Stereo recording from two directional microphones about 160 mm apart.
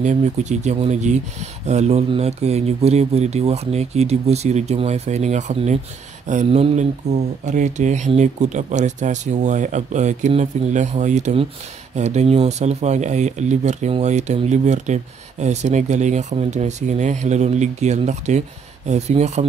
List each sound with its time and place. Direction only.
0.0 s speech: 50° right (ahead or behind)